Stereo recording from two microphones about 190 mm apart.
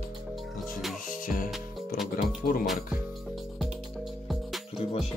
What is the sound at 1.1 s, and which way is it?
Music, 45° left (ahead or behind).